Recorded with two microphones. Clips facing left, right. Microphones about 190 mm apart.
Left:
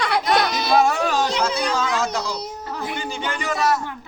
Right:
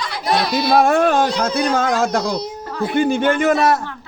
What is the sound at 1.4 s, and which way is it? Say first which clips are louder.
Speech: right 5 dB; 55° right (ahead or behind).